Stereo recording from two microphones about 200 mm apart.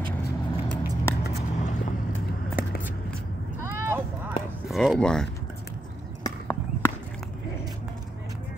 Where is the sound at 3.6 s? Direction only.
10° right (ahead or behind).